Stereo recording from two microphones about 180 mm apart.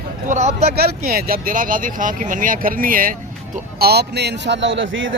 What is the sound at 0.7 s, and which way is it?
Speech, 60° right (ahead or behind).